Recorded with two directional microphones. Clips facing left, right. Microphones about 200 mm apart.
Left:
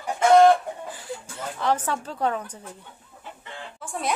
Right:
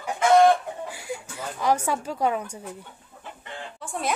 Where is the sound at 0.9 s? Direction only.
10° right (ahead or behind).